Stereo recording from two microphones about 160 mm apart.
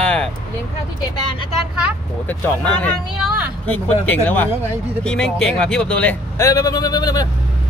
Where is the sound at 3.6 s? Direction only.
10° left (ahead or behind).